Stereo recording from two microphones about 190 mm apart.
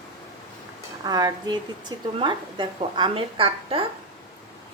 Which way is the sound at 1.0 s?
20° right (ahead or behind).